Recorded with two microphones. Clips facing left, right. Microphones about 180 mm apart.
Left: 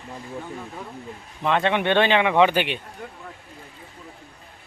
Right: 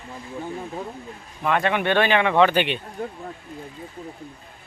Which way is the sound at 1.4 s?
20° left (ahead or behind).